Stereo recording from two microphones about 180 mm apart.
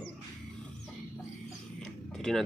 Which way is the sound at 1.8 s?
5° left (ahead or behind).